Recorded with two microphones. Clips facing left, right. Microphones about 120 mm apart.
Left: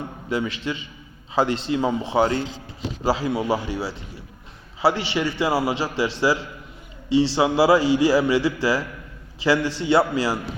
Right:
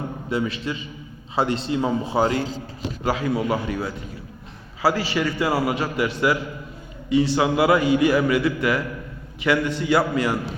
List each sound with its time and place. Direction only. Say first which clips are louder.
0.3 s a man's voice: even; 30° right (ahead or behind)
1.8 s a man's voice: left 1 dB; 15° left (ahead or behind)
3.0 s a man's voice: even; 30° left (ahead or behind)